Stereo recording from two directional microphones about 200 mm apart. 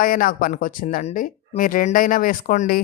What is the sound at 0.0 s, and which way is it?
Speech, 45° left (ahead or behind).